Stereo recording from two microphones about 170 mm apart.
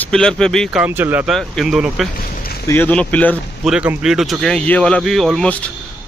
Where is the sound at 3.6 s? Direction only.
5° right (ahead or behind).